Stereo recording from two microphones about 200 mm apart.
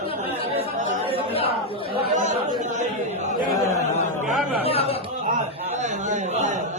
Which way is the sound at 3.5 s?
15° left (ahead or behind).